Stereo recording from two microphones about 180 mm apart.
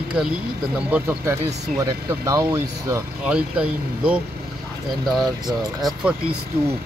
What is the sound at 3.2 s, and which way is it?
Speech, 5° right (ahead or behind).